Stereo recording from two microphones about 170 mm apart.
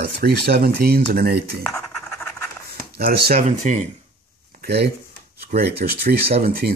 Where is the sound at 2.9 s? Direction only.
65° right (ahead or behind).